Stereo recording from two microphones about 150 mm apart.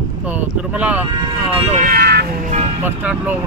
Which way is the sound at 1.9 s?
90° right.